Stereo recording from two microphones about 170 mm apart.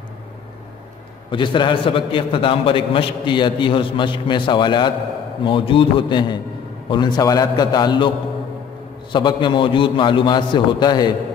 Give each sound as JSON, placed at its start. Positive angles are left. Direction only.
{"t": 1.3, "sound": "a man's voice", "side_deg": 30}
{"t": 9.1, "sound": "a man's voice", "side_deg": 25}